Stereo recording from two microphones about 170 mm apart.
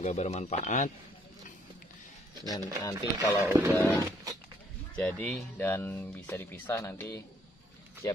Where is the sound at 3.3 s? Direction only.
15° right (ahead or behind).